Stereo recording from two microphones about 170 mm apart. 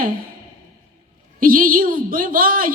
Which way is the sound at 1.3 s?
55° right (ahead or behind).